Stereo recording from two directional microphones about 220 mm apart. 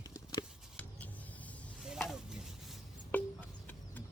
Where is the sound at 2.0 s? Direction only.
Centre (ahead or behind).